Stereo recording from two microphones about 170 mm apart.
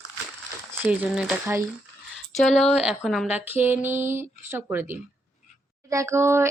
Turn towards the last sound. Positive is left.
turn(degrees=-15)  # may be behind; listen again after turning